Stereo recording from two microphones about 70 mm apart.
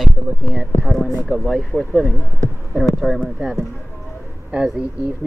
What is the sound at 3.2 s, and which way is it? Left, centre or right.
Speech, right.